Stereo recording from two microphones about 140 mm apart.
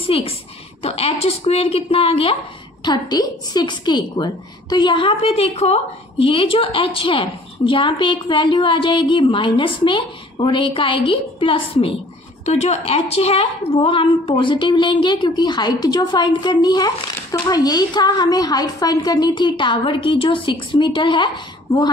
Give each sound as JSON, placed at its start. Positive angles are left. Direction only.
{"t": 0.1, "sound": "a woman's voice", "side_deg": 40}
{"t": 2.8, "sound": "a woman's voice", "side_deg": 30}
{"t": 12.4, "sound": "a woman's voice", "side_deg": 50}